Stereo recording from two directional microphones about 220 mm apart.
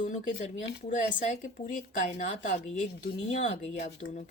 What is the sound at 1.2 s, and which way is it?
Speech, 35° left (ahead or behind).